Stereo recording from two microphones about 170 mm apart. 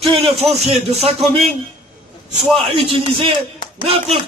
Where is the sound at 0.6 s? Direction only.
40° right (ahead or behind).